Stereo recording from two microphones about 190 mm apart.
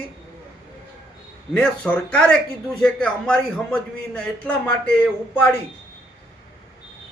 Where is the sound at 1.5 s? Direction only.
5° left (ahead or behind).